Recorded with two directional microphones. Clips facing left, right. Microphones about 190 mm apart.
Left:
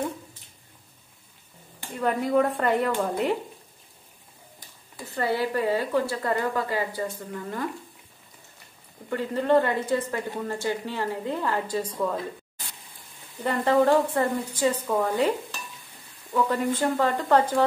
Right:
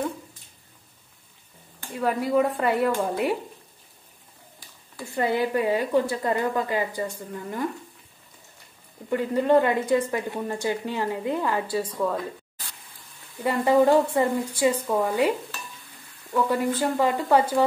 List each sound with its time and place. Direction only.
2.0 s speech: 5° right (ahead or behind)
5.1 s a woman's voice: 15° right (ahead or behind)
9.1 s a woman's voice: 15° right (ahead or behind)
13.4 s a woman's voice: 10° right (ahead or behind)